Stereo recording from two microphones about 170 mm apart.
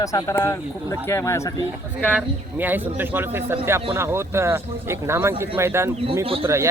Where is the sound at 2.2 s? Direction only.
10° right (ahead or behind).